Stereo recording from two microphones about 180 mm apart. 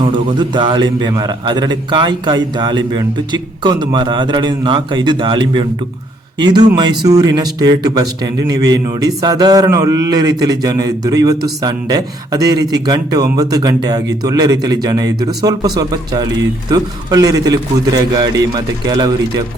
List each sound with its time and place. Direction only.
0.3 s a man's voice: 25° right (ahead or behind)